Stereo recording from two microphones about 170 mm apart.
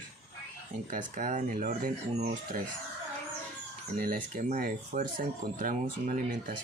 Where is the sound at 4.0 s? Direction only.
55° right (ahead or behind).